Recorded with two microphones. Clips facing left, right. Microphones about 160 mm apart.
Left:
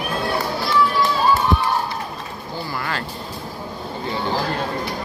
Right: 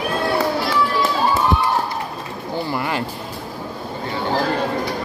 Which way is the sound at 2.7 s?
20° right (ahead or behind).